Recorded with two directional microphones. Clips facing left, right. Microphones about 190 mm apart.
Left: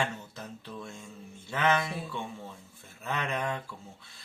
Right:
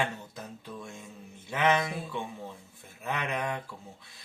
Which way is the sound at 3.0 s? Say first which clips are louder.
Even; 15° right (ahead or behind).